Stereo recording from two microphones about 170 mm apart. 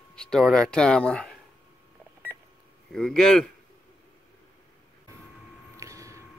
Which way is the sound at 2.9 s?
5° left (ahead or behind).